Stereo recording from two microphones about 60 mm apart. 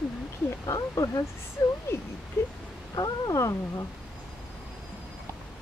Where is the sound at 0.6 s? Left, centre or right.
Left.